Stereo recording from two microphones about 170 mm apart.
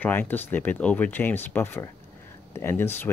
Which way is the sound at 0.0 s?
10° left (ahead or behind).